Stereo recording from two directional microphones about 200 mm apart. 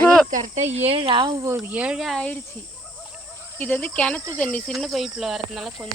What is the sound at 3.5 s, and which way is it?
Speech, 10° left (ahead or behind).